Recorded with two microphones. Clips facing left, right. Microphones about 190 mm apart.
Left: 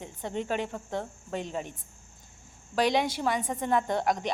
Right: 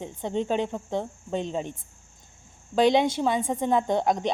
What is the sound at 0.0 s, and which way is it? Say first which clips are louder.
Speech: right 5 dB; 25° right (ahead or behind).